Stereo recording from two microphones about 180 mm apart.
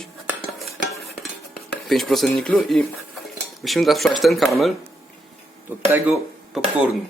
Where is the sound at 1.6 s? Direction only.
Centre (ahead or behind).